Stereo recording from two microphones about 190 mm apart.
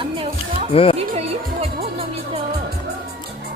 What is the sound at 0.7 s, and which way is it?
Speech, 30° left (ahead or behind).